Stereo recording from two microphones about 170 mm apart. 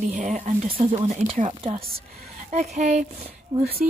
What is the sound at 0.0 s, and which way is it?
Speech, 45° right (ahead or behind).